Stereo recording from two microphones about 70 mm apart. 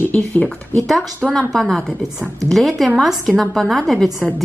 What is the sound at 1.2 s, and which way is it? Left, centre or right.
A woman's voice, centre.